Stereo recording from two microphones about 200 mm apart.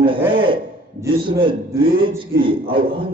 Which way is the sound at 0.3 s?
25° right (ahead or behind).